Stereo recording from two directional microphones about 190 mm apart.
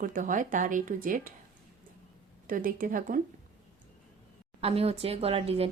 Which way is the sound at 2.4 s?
45° right (ahead or behind).